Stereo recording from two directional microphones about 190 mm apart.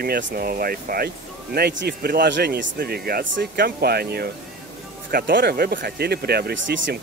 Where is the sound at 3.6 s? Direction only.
55° right (ahead or behind).